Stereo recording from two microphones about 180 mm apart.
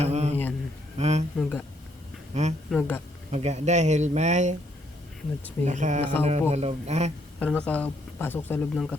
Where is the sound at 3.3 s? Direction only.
40° right (ahead or behind).